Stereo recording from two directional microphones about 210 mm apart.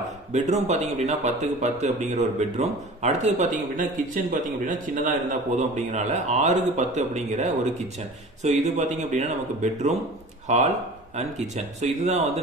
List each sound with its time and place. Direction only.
0.3 s speech: 35° right (ahead or behind)